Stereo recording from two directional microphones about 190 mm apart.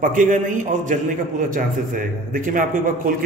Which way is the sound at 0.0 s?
45° right (ahead or behind).